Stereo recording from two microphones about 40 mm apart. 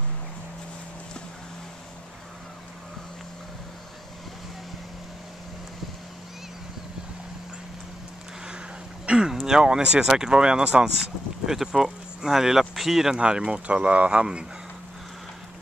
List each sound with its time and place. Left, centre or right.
9.0 s a sound: right
9.3 s a sound: centre
9.6 s speech: right
11.4 s speech: centre
13.2 s speech: right
14.2 s speech: right